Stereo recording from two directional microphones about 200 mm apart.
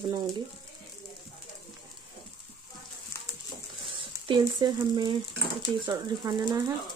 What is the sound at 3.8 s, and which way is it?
Speech, 25° right (ahead or behind).